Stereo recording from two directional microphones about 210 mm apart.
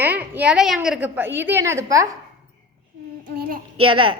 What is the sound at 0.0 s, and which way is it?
A woman's voice, 10° right (ahead or behind).